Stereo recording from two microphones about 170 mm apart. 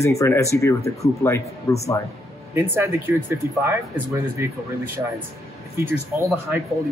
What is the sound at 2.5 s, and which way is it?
Speech, 15° right (ahead or behind).